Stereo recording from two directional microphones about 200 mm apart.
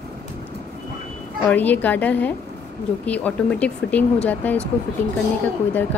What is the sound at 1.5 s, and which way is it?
Speech, 10° left (ahead or behind).